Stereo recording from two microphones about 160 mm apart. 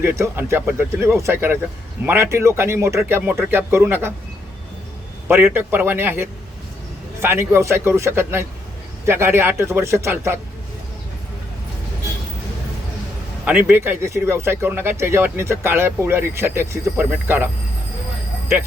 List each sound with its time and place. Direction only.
0.0 s speech: 15° right (ahead or behind)
5.3 s speech: 15° right (ahead or behind)
13.4 s speech: 10° right (ahead or behind)